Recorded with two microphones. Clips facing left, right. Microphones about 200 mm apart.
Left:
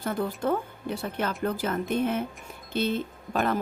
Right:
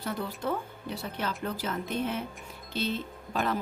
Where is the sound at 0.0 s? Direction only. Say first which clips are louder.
Left 5 dB; 50° left (ahead or behind).